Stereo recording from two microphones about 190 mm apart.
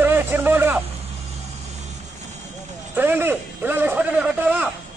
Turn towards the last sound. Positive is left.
turn(degrees=-10)  # may be behind; listen again after turning